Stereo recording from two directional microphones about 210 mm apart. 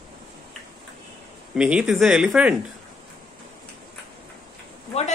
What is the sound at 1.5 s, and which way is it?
Speech, 5° right (ahead or behind).